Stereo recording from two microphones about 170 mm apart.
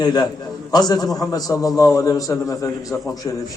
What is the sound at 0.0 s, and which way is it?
A man's voice, 25° left (ahead or behind).